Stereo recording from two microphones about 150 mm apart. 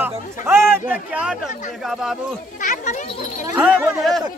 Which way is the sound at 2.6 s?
60° left (ahead or behind).